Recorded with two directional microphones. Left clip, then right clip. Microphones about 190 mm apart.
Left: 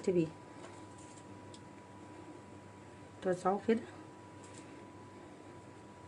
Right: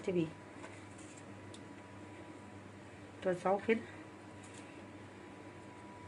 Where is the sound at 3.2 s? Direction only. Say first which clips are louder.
Even; 25° left (ahead or behind).